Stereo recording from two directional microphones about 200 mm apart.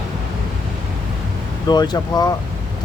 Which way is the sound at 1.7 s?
20° left (ahead or behind).